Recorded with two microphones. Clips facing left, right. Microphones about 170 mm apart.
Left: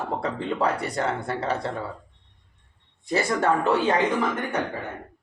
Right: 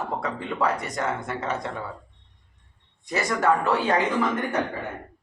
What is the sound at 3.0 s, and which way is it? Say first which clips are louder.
Speech: left 1 dB; 30° left (ahead or behind).